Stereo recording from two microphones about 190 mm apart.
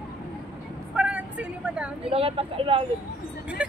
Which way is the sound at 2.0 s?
30° right (ahead or behind).